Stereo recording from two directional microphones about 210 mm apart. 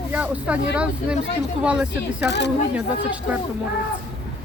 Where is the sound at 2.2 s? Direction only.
55° left (ahead or behind).